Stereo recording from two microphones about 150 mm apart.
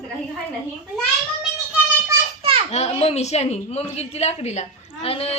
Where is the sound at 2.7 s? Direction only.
45° left (ahead or behind).